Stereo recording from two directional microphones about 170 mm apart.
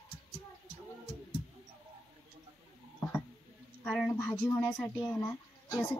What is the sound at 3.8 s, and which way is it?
Speech, centre (ahead or behind).